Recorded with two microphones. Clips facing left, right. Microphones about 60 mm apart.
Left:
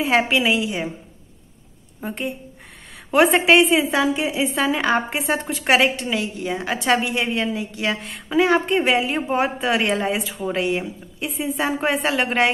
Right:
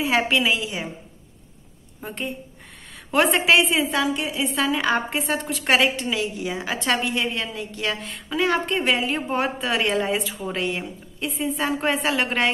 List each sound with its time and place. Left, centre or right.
0.0 s a woman's voice: centre
2.0 s a woman's voice: centre
4.0 s a woman's voice: centre
4.7 s a woman's voice: centre
5.3 s speech: centre
5.7 s a woman's voice: centre